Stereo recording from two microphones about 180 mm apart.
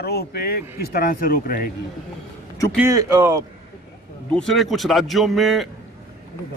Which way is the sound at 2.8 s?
20° right (ahead or behind).